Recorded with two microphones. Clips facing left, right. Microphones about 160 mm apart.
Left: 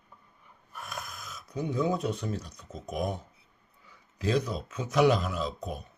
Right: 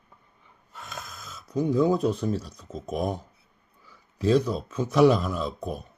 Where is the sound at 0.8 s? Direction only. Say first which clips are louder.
Right 1 dB; 25° right (ahead or behind).